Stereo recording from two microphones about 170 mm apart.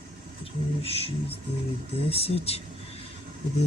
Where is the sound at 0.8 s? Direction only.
35° left (ahead or behind).